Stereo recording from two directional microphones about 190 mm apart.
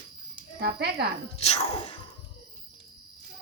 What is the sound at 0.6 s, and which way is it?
Speech, 60° right (ahead or behind).